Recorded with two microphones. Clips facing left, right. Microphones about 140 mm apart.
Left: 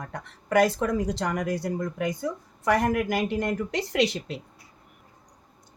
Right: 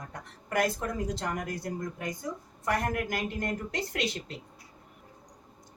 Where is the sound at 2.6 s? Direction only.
90° left.